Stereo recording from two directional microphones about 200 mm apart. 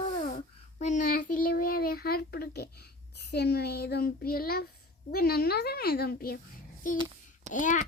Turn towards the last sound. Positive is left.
turn(degrees=40)  # may be behind; listen again after turning